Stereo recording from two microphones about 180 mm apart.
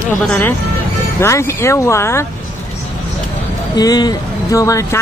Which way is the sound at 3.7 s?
20° left (ahead or behind).